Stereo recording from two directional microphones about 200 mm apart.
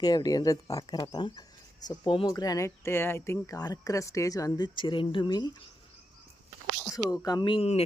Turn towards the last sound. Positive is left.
turn(degrees=30)  # may be behind; listen again after turning